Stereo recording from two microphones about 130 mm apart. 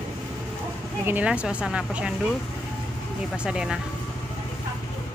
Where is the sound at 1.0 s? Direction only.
15° right (ahead or behind).